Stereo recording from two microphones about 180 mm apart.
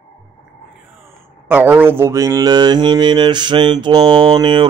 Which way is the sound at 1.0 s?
10° right (ahead or behind).